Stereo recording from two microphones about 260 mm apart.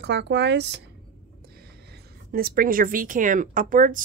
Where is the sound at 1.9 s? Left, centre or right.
Right.